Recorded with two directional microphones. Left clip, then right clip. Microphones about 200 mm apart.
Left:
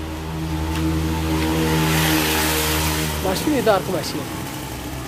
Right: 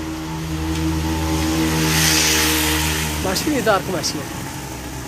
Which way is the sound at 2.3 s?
45° left (ahead or behind).